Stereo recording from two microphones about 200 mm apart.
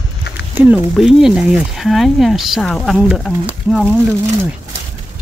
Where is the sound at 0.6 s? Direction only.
10° right (ahead or behind).